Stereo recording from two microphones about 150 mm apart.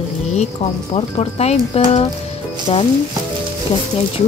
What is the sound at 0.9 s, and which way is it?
A woman's voice, 45° left (ahead or behind).